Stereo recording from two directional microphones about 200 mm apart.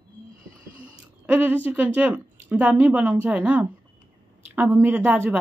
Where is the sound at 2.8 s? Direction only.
5° right (ahead or behind).